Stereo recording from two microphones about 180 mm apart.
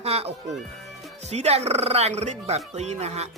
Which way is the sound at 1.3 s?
35° right (ahead or behind).